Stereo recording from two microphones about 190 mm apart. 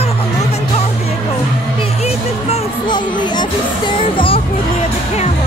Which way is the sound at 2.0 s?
35° left (ahead or behind).